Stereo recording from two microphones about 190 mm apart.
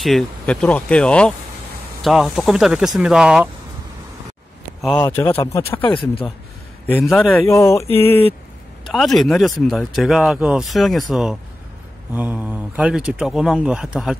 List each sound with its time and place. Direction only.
0.0 s speech: centre (ahead or behind)
4.9 s speech: 10° left (ahead or behind)
5.9 s speech: 25° left (ahead or behind)
6.9 s speech: 5° left (ahead or behind)
7.4 s speech: 15° left (ahead or behind)
8.8 s speech: centre (ahead or behind)